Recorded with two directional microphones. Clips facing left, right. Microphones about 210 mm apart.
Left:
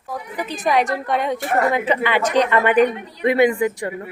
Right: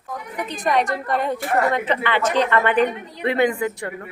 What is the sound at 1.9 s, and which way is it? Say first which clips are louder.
A woman's voice: left 2 dB; 10° left (ahead or behind).